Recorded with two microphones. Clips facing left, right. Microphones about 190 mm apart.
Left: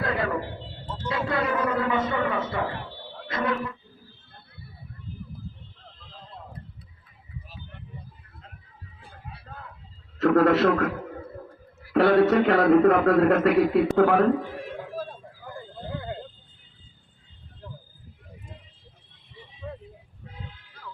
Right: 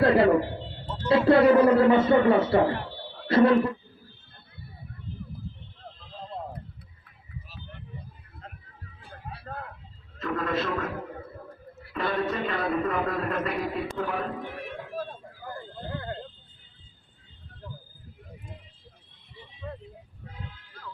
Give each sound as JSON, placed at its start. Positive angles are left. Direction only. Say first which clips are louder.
{"t": 0.0, "sound": "a sound", "louder": "right 8 dB", "side_deg": -30}
{"t": 3.2, "sound": "speech", "louder": "right 9 dB", "side_deg": -35}
{"t": 9.3, "sound": "a sound", "louder": "right 7 dB", "side_deg": -55}
{"t": 10.2, "sound": "a man's voice", "louder": "left 10 dB", "side_deg": 75}
{"t": 11.9, "sound": "a man's voice", "louder": "left 10 dB", "side_deg": 70}
{"t": 15.5, "sound": "horse", "louder": "left 2 dB", "side_deg": 10}